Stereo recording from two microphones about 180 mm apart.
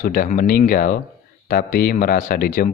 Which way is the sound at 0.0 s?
50° left (ahead or behind).